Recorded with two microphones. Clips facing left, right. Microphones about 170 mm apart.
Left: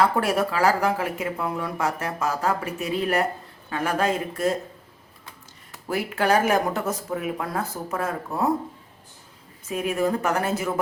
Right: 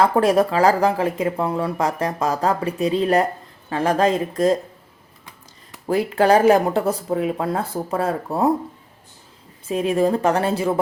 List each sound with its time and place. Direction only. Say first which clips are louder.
0.3 s speech: right 5 dB; 35° right (ahead or behind)
6.1 s speech: right 6 dB; 35° right (ahead or behind)
9.6 s speech: right 5 dB; 30° right (ahead or behind)